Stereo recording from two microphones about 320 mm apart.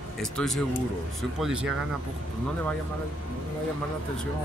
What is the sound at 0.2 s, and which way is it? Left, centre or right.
Speech, centre.